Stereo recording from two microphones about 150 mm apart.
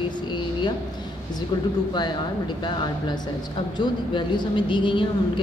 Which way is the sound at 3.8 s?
30° left (ahead or behind).